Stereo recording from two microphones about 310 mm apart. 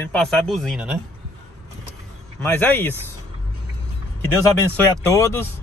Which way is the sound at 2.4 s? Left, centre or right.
Centre.